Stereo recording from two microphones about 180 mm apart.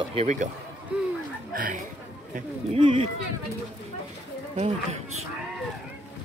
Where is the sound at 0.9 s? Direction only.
5° right (ahead or behind).